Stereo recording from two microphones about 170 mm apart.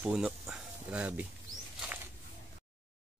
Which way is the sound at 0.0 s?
5° right (ahead or behind).